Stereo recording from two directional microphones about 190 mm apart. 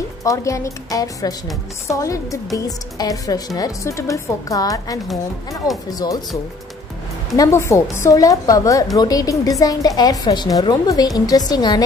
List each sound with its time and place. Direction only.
0.2 s a woman's voice: 15° left (ahead or behind)